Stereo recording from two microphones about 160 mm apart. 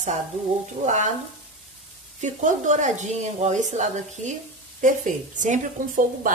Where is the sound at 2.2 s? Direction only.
50° right (ahead or behind).